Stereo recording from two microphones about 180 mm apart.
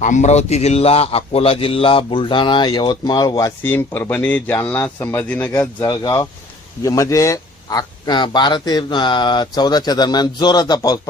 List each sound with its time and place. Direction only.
0.0 s a man's voice: 40° left (ahead or behind); by 11.0 s 20° left (ahead or behind)